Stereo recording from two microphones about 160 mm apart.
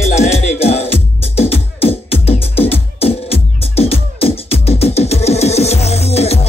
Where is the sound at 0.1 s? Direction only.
40° left (ahead or behind).